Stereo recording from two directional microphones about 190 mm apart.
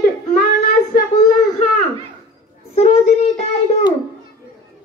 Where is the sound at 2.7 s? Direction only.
35° left (ahead or behind).